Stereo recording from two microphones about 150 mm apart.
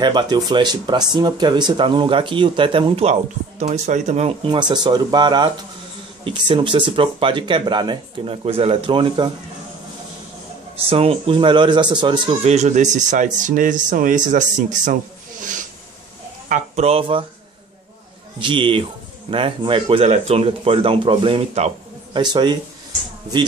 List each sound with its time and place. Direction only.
0.0 s speech: 30° right (ahead or behind)
10.9 s speech: 40° right (ahead or behind)
12.4 s speech: 50° right (ahead or behind)
16.4 s speech: 50° right (ahead or behind)
18.4 s speech: 35° right (ahead or behind)
22.2 s speech: 30° right (ahead or behind)